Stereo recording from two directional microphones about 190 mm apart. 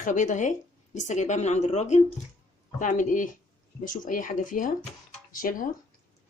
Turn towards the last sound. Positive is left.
turn(degrees=45)  # may be behind; listen again after turning